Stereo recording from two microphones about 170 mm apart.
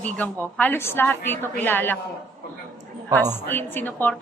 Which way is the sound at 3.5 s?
10° left (ahead or behind).